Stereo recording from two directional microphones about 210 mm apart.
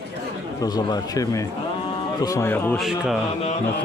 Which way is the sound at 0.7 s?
15° left (ahead or behind).